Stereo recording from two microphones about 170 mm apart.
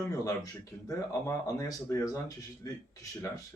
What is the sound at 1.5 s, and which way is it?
Speech, 20° left (ahead or behind).